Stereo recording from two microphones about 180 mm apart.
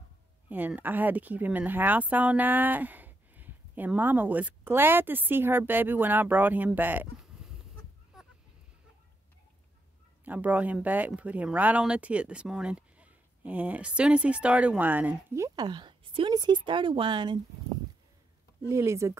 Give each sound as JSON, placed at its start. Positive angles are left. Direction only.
{"t": 0.5, "sound": "speech", "side_deg": -10}
{"t": 8.1, "sound": "a sound", "side_deg": 0}
{"t": 10.2, "sound": "speech", "side_deg": -10}
{"t": 18.7, "sound": "speech", "side_deg": -15}